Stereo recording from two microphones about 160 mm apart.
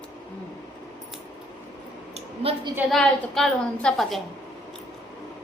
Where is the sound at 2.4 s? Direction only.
35° right (ahead or behind).